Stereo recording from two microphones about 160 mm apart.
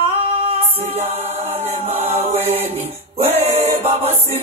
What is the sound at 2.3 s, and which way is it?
A capella, 40° right (ahead or behind).